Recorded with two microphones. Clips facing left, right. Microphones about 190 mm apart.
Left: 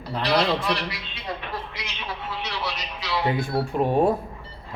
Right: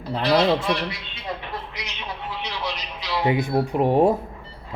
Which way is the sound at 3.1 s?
20° right (ahead or behind).